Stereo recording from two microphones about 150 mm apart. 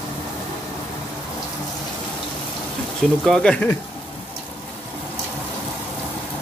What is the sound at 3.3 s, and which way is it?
Speech, 5° left (ahead or behind).